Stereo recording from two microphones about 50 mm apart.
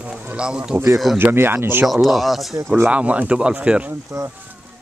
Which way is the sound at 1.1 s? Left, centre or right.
Right.